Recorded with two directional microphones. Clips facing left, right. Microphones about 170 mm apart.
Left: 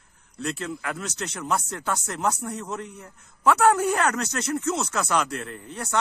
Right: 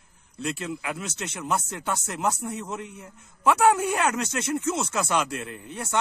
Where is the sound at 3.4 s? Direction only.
25° right (ahead or behind).